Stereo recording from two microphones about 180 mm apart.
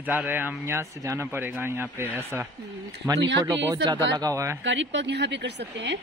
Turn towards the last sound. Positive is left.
turn(degrees=-75)  # may be behind; listen again after turning